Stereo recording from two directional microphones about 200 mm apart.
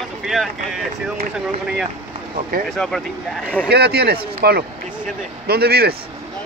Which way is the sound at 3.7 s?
55° right (ahead or behind).